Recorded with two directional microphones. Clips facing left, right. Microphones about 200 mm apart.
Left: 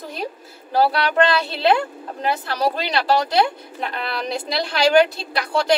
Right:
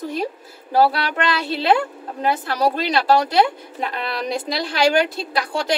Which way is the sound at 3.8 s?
40° right (ahead or behind).